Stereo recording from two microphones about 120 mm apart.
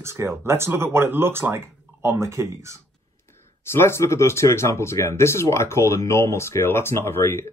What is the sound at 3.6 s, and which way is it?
Speech, 20° left (ahead or behind).